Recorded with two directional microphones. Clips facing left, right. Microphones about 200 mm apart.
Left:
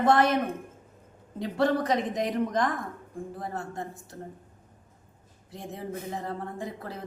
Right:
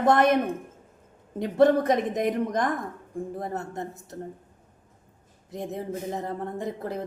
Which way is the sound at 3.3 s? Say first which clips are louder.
Right 1 dB; 20° right (ahead or behind).